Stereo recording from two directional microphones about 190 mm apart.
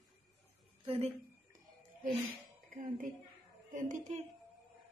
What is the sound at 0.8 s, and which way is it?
Speech, 30° right (ahead or behind).